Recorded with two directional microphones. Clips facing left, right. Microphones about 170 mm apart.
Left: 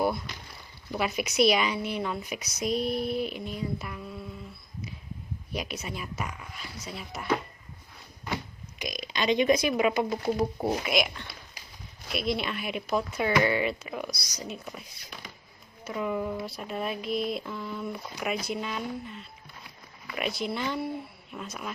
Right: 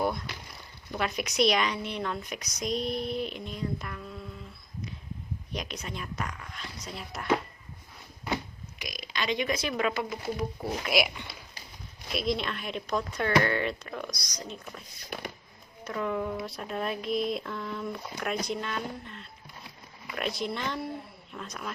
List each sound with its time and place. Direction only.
0.0 s a sound: 5° left (ahead or behind)
0.9 s speech: 5° left (ahead or behind)
5.5 s speech: 5° left (ahead or behind)
8.8 s speech: 20° left (ahead or behind)
10.1 s speech: 30° left (ahead or behind)
10.8 s speech: 5° right (ahead or behind)